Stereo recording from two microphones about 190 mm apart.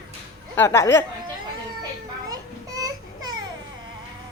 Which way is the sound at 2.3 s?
20° right (ahead or behind).